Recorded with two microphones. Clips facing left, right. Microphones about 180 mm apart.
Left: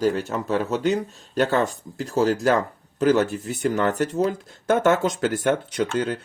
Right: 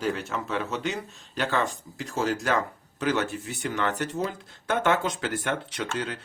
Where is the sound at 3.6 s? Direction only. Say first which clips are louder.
Left 7 dB; 40° left (ahead or behind).